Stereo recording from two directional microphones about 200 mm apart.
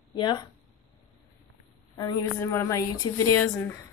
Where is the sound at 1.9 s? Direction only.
20° left (ahead or behind).